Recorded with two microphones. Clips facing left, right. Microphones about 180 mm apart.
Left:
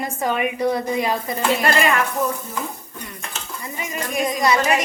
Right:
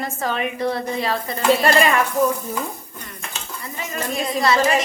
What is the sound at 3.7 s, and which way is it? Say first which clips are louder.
Speech: left 1 dB; 15° left (ahead or behind).